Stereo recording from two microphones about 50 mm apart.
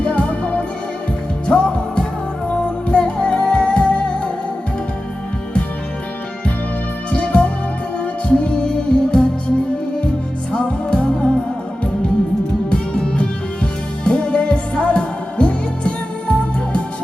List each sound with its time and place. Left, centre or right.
0.0 s music: left
7.1 s music: left
10.5 s music: left
12.7 s music: left